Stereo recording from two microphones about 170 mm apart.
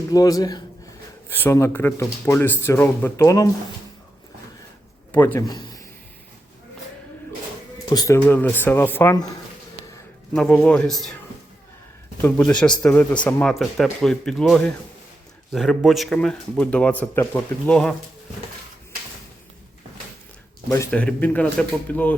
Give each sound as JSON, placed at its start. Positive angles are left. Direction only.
{"t": 0.1, "sound": "a man's voice", "side_deg": 20}
{"t": 5.1, "sound": "a man's voice", "side_deg": 10}
{"t": 7.9, "sound": "a man's voice", "side_deg": 20}
{"t": 8.2, "sound": "speech", "side_deg": 10}
{"t": 10.3, "sound": "speech", "side_deg": 5}
{"t": 12.2, "sound": "speech", "side_deg": 5}
{"t": 20.7, "sound": "speech", "side_deg": 20}
{"t": 20.9, "sound": "speech", "side_deg": 5}